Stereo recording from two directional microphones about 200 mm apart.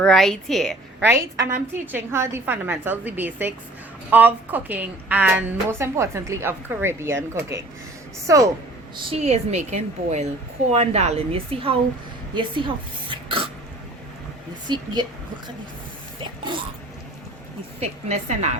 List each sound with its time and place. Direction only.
0.0 s a woman's voice: centre (ahead or behind)
1.0 s a woman's voice: 15° right (ahead or behind)
9.0 s a woman's voice: 30° right (ahead or behind)
12.3 s a sound: 25° right (ahead or behind)
14.7 s a woman's voice: 20° right (ahead or behind)
17.7 s a woman's voice: 35° right (ahead or behind)